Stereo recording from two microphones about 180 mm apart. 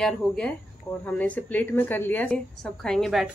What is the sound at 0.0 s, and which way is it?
A woman's voice, 5° left (ahead or behind).